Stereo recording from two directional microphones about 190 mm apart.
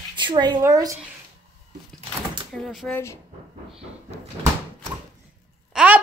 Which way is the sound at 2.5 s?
Centre (ahead or behind).